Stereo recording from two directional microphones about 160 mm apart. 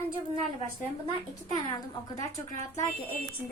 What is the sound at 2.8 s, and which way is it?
Speech, 10° left (ahead or behind).